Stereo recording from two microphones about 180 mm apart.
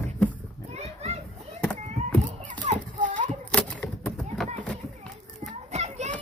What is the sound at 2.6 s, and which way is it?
Children playing, 45° right (ahead or behind).